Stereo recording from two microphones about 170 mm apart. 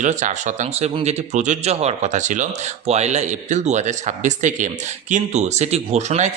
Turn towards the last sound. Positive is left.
turn(degrees=-40)  # may be behind; listen again after turning